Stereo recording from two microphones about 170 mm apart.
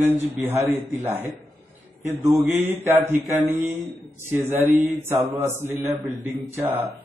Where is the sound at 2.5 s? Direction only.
15° right (ahead or behind).